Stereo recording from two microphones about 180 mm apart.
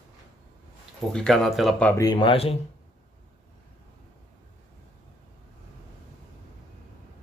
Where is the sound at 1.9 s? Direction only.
20° left (ahead or behind).